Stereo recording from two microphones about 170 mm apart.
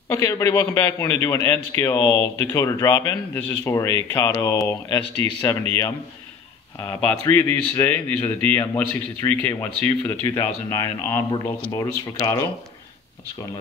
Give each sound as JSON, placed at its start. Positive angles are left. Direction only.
{"t": 0.1, "sound": "a man's voice", "side_deg": 15}
{"t": 6.8, "sound": "a man's voice", "side_deg": 15}